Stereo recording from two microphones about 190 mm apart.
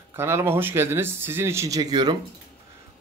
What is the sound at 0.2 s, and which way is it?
A man's voice, 15° right (ahead or behind).